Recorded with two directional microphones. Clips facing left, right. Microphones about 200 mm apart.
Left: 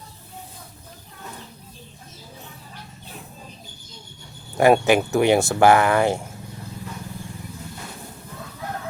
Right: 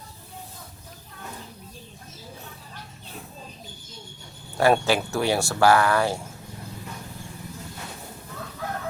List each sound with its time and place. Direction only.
4.5 s speech: 15° left (ahead or behind)